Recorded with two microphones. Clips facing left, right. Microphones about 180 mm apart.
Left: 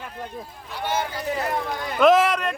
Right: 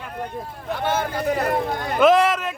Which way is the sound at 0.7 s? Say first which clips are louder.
Right 4 dB; 55° right (ahead or behind).